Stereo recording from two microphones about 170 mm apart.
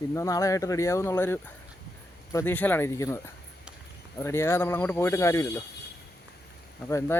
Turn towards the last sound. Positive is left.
turn(degrees=15)  # may be behind; listen again after turning